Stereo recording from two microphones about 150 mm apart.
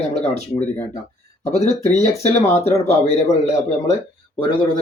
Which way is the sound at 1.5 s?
50° left (ahead or behind).